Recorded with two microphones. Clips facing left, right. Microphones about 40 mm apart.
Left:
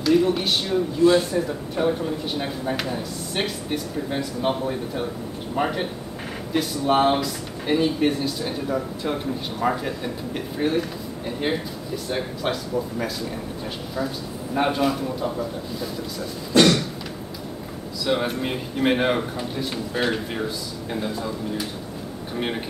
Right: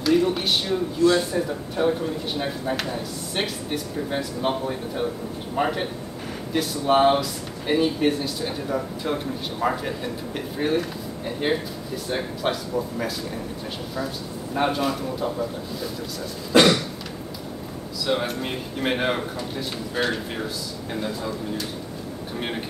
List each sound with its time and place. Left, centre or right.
0.0 s speech: centre
13.9 s speech: centre
16.5 s a sound: centre
18.0 s speech: centre